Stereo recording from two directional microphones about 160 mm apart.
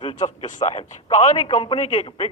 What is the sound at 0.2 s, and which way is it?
Speech, 50° left (ahead or behind).